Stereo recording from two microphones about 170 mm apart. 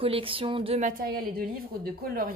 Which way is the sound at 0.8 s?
60° right (ahead or behind).